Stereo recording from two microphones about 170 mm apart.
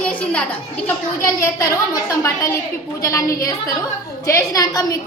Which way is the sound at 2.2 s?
15° left (ahead or behind).